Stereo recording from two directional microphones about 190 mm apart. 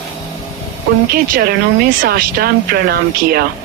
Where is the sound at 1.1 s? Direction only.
50° right (ahead or behind).